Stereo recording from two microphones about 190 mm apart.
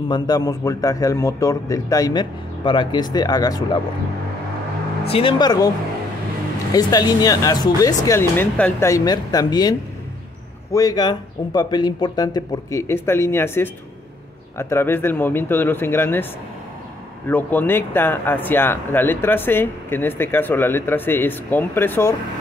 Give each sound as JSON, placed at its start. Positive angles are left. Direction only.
{"t": 0.1, "sound": "a man's voice", "side_deg": 20}
{"t": 5.0, "sound": "a man's voice", "side_deg": 30}
{"t": 6.7, "sound": "a man's voice", "side_deg": 20}
{"t": 17.3, "sound": "speech", "side_deg": 10}